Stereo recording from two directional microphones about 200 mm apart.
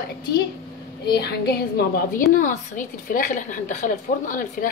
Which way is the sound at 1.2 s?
55° left (ahead or behind).